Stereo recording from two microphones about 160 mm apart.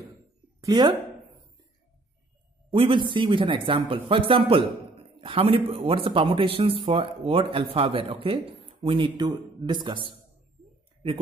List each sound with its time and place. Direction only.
0.6 s speech: 25° right (ahead or behind)
2.7 s speech: 30° right (ahead or behind)